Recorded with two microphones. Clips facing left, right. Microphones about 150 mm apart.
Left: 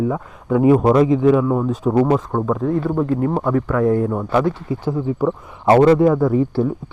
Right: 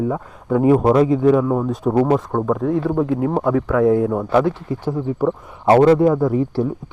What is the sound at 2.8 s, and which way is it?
Speech, 85° right.